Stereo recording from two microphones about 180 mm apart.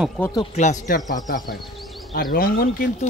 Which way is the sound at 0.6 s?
45° left (ahead or behind).